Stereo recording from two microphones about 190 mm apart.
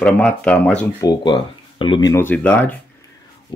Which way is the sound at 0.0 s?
5° left (ahead or behind).